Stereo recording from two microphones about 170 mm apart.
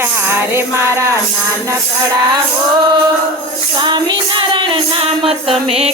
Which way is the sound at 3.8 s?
25° right (ahead or behind).